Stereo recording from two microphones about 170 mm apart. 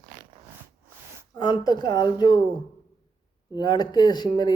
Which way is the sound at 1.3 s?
25° left (ahead or behind).